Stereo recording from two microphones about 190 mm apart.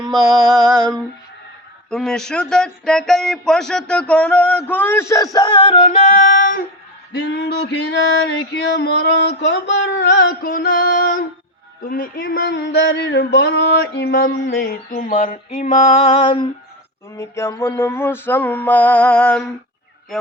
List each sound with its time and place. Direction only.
0.1 s music: centre (ahead or behind)
1.9 s a man's voice: 5° left (ahead or behind); by 6.7 s 50° left (ahead or behind)
7.1 s a sound: 60° left (ahead or behind); by 16.5 s 25° left (ahead or behind)
17.2 s a man's voice: 15° left (ahead or behind)